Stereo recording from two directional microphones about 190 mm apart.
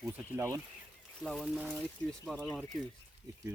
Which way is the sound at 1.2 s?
Centre (ahead or behind).